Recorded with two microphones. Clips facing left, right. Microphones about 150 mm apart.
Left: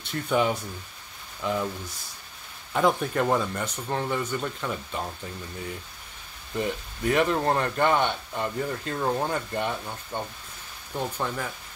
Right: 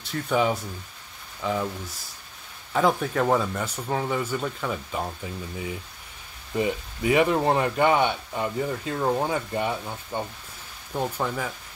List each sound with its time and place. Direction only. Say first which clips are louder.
0.0 s speech: right 1 dB; centre (ahead or behind)
2.7 s speech: right 1 dB; centre (ahead or behind)